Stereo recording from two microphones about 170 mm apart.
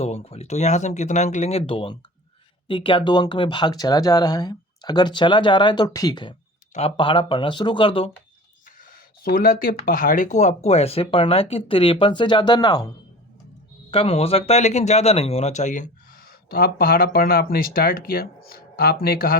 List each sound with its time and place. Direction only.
0.0 s speech: 35° left (ahead or behind)
8.8 s speech: 55° left (ahead or behind); by 12.9 s 25° left (ahead or behind)
13.9 s speech: 35° left (ahead or behind); by 19.4 s 60° left (ahead or behind)